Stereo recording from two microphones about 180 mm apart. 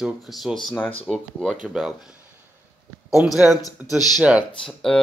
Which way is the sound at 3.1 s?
Centre (ahead or behind).